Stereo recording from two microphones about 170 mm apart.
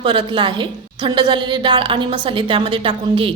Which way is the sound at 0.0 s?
30° right (ahead or behind).